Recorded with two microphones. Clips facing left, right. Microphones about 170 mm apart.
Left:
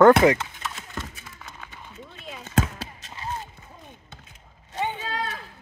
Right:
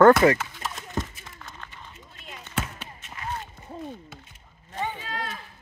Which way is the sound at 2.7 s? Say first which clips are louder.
Left 2 dB; 30° left (ahead or behind).